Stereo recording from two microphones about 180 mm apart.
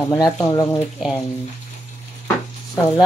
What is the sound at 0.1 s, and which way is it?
Speech, 15° left (ahead or behind).